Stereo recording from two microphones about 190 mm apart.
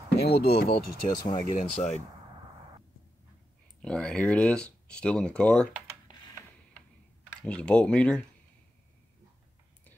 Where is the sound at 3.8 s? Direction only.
5° left (ahead or behind).